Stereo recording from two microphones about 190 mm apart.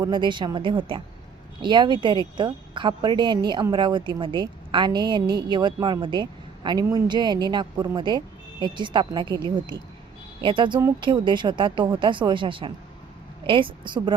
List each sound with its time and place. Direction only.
0.0 s a woman's voice: 25° right (ahead or behind)